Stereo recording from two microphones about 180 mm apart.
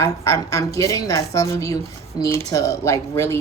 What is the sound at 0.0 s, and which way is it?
Speech, 15° left (ahead or behind).